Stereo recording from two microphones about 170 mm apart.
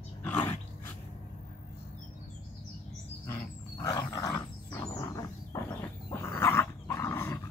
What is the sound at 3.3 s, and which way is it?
Wild animals, 20° left (ahead or behind).